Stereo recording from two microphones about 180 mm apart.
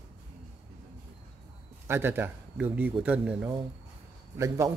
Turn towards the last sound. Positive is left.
turn(degrees=-15)  # may be behind; listen again after turning